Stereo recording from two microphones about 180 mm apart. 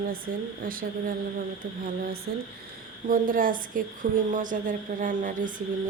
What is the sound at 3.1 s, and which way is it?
Speech, 50° right (ahead or behind).